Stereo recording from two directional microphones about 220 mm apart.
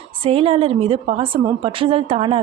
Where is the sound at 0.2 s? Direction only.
25° right (ahead or behind).